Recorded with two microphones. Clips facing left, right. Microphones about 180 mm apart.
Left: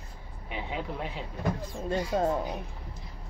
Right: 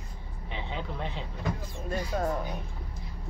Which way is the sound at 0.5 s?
10° left (ahead or behind).